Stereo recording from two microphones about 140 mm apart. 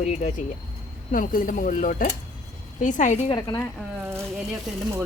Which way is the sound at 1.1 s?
80° left.